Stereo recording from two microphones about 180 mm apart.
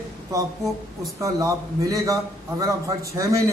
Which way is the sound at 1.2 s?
20° right (ahead or behind).